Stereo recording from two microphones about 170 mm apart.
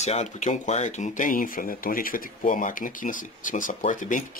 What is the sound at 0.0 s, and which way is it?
Speech, 40° left (ahead or behind).